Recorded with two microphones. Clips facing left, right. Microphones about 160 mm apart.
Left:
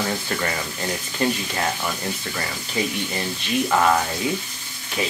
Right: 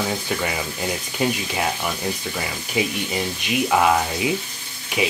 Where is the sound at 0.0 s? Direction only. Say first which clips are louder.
Right 1 dB; 5° right (ahead or behind).